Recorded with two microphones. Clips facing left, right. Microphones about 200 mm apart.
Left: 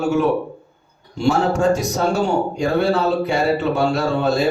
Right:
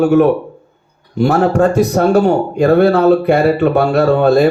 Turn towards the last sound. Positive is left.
turn(degrees=-60)  # may be behind; listen again after turning